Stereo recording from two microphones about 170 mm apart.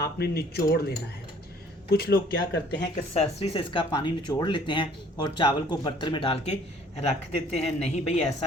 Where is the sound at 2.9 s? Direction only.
40° left (ahead or behind).